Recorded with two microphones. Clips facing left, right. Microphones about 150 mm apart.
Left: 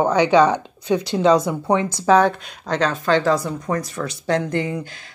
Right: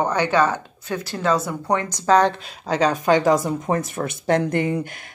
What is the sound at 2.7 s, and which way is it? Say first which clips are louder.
Speech: right 1 dB; 10° right (ahead or behind).